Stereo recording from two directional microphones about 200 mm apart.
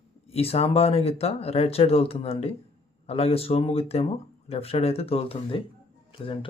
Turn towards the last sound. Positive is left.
turn(degrees=25)  # may be behind; listen again after turning